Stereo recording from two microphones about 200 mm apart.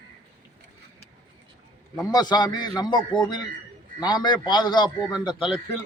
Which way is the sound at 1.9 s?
20° left (ahead or behind).